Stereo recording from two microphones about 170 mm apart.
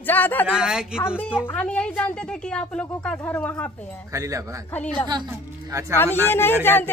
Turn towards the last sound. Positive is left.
turn(degrees=10)  # may be behind; listen again after turning